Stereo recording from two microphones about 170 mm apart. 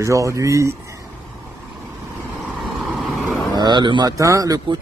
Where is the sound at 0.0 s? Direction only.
20° right (ahead or behind).